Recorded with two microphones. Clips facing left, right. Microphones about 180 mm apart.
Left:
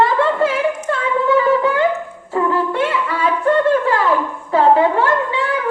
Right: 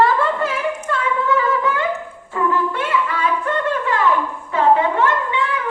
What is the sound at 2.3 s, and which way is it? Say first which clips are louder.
Music: left 3 dB; 30° left (ahead or behind).